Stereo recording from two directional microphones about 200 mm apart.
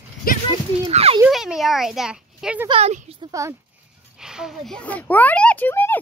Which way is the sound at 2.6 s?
30° right (ahead or behind).